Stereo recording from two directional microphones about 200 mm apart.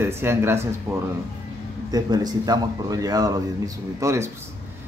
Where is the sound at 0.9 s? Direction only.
Centre (ahead or behind).